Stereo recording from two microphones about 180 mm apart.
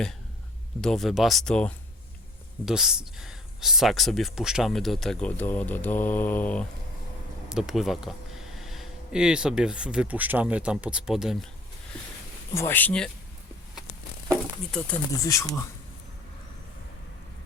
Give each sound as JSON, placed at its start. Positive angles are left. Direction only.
{"t": 0.8, "sound": "speech", "side_deg": 0}
{"t": 12.5, "sound": "speech", "side_deg": 10}
{"t": 14.3, "sound": "a sound", "side_deg": 5}
{"t": 15.2, "sound": "speech", "side_deg": 15}